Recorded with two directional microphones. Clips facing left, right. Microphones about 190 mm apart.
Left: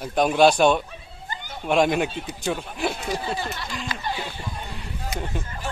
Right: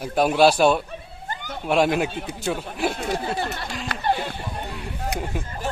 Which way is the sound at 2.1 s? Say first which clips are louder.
Right 2 dB; 60° right (ahead or behind).